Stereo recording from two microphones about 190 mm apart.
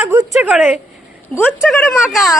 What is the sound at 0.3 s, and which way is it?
A woman's voice, 5° right (ahead or behind).